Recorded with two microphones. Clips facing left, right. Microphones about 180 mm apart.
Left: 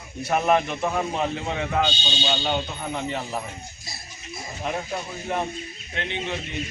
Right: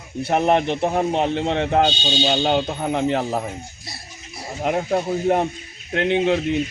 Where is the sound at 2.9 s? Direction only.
75° right (ahead or behind).